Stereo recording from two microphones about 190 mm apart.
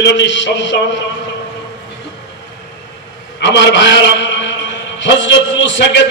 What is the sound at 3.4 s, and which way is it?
A man's voice, 70° left (ahead or behind).